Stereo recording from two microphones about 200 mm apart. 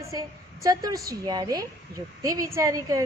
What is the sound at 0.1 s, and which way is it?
A woman's voice, 15° right (ahead or behind).